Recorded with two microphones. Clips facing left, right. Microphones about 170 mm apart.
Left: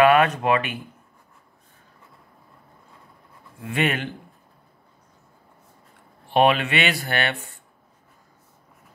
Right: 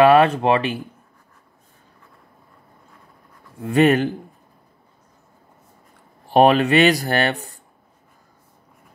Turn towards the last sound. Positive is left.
turn(degrees=-40)  # may be behind; listen again after turning